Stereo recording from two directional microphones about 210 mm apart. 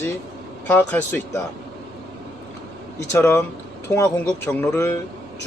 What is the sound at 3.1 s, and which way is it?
Speech, 10° left (ahead or behind).